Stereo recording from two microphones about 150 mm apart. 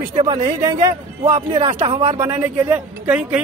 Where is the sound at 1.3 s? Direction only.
40° right (ahead or behind).